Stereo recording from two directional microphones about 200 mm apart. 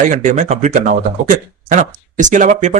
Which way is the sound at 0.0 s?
40° right (ahead or behind).